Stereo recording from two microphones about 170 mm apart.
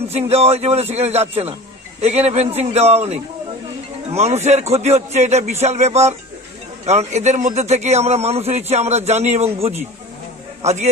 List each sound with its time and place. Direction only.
0.1 s a man's voice: 35° right (ahead or behind)